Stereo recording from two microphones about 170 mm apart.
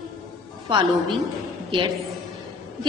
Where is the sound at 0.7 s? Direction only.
30° right (ahead or behind).